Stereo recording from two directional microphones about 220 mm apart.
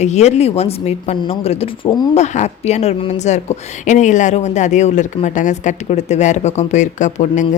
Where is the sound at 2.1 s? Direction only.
30° left (ahead or behind).